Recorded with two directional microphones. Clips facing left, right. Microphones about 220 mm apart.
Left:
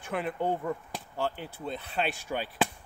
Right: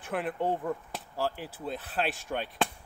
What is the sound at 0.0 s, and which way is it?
Speech, 5° right (ahead or behind).